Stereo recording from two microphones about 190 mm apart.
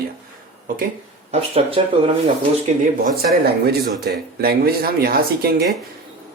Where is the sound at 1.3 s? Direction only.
30° right (ahead or behind).